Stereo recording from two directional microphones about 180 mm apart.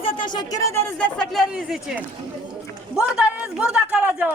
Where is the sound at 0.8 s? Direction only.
5° left (ahead or behind).